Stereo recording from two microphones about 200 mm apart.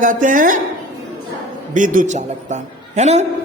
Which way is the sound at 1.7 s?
40° right (ahead or behind).